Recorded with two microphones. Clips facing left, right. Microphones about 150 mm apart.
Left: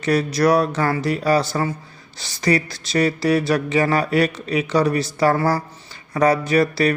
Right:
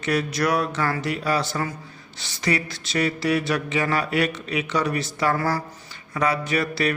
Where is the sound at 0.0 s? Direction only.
35° left (ahead or behind).